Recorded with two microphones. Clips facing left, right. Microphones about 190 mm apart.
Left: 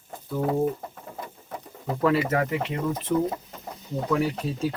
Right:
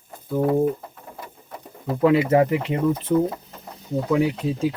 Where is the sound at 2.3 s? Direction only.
25° right (ahead or behind).